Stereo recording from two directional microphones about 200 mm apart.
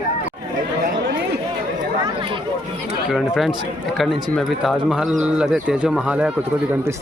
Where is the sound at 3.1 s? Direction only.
Centre (ahead or behind).